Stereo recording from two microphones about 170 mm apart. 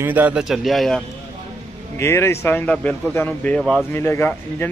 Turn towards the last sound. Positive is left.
turn(degrees=15)  # may be behind; listen again after turning